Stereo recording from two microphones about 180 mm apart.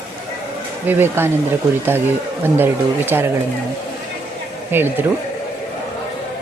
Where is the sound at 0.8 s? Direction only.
10° right (ahead or behind).